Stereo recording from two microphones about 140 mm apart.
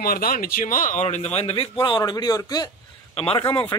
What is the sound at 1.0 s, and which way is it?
Speech, 50° left (ahead or behind).